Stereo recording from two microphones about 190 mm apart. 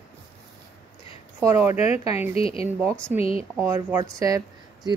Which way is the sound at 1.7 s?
35° left (ahead or behind).